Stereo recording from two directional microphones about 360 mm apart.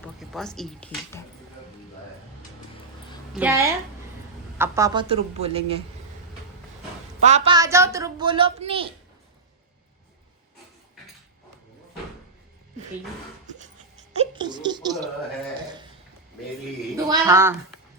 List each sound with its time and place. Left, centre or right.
0.0 s speech: centre
3.3 s a woman's voice: centre
7.2 s a woman's voice: centre
14.1 s a sound: centre
17.1 s a woman's voice: centre